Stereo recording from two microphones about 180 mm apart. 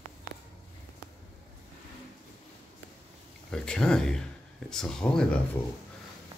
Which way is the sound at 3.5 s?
5° left (ahead or behind).